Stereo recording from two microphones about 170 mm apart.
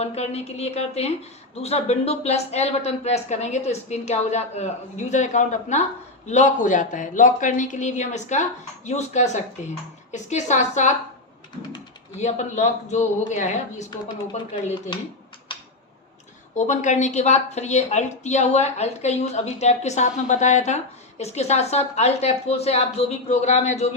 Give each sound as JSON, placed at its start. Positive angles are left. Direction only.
{"t": 0.0, "sound": "a woman's voice", "side_deg": 35}
{"t": 12.2, "sound": "a woman's voice", "side_deg": 45}
{"t": 15.5, "sound": "a sound", "side_deg": 30}
{"t": 16.6, "sound": "speech", "side_deg": 45}